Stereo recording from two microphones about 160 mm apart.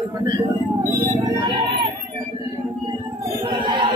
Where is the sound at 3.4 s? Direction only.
30° right (ahead or behind).